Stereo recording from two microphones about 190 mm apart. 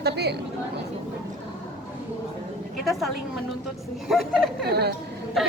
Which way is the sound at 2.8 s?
Centre (ahead or behind).